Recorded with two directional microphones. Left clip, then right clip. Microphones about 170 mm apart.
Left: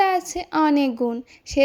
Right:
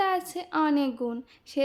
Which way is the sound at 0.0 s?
30° left (ahead or behind).